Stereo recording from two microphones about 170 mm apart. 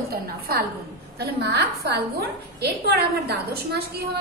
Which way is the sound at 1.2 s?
75° right (ahead or behind).